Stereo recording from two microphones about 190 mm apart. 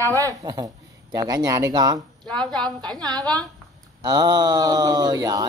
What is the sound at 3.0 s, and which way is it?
Speech, 20° right (ahead or behind).